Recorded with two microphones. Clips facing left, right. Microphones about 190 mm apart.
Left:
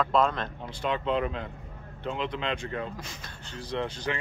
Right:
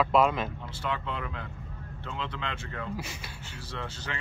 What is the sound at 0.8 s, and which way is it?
Speech, 20° left (ahead or behind).